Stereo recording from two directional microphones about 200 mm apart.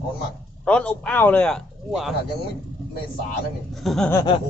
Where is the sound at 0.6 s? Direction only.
5° left (ahead or behind).